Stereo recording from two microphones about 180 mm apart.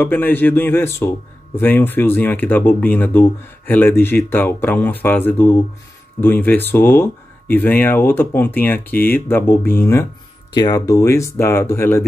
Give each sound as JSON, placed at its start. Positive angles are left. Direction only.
{"t": 0.0, "sound": "speech", "side_deg": 10}